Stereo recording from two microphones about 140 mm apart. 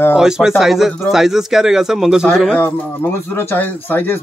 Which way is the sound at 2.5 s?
15° left (ahead or behind).